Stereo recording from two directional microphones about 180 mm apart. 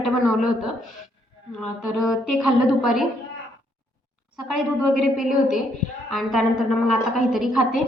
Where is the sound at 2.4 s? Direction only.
5° right (ahead or behind).